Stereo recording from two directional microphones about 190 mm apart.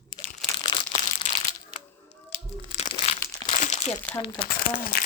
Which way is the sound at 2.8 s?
35° left (ahead or behind).